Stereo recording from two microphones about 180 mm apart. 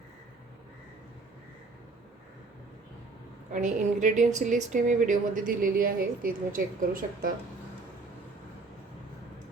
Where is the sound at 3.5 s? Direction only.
45° right (ahead or behind).